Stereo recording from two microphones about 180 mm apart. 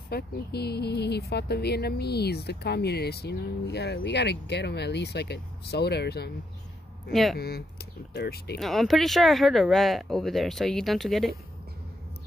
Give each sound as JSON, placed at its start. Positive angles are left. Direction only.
{"t": 0.1, "sound": "speech", "side_deg": 65}
{"t": 7.1, "sound": "speech", "side_deg": 0}
{"t": 7.3, "sound": "speech", "side_deg": 60}
{"t": 8.5, "sound": "speech", "side_deg": 0}